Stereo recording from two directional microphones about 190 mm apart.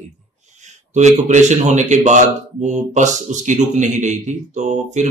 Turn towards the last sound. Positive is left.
turn(degrees=-40)  # may be behind; listen again after turning